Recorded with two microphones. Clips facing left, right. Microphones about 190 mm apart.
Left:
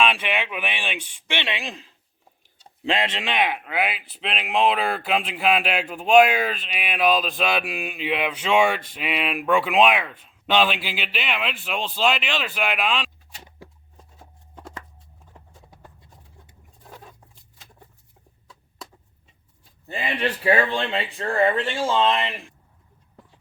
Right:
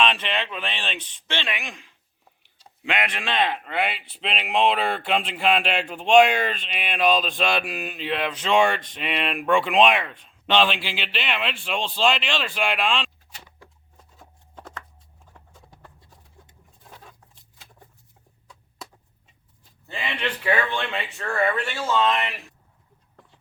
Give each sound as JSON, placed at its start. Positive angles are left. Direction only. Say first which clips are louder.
{"t": 0.0, "sound": "speech", "louder": "left 1 dB", "side_deg": 10}
{"t": 1.5, "sound": "speech", "louder": "left 3 dB", "side_deg": 35}
{"t": 19.9, "sound": "a man's voice", "louder": "left 3 dB", "side_deg": 40}